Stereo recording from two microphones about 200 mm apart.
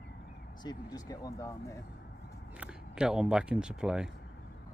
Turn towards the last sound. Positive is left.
turn(degrees=-5)  # may be behind; listen again after turning